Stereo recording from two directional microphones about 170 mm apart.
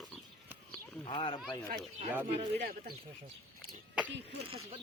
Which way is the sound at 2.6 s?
60° right (ahead or behind).